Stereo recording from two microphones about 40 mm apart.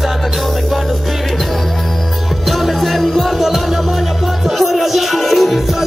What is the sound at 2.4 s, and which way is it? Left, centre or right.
Music, centre.